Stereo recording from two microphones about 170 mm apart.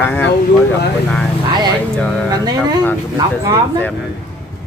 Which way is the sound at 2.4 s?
25° right (ahead or behind).